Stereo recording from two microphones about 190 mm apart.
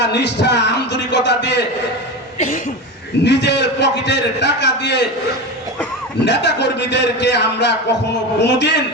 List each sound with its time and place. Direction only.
0.0 s speech: 65° left (ahead or behind)
3.2 s a man's voice: 65° left (ahead or behind)
6.2 s a man's voice: 65° left (ahead or behind)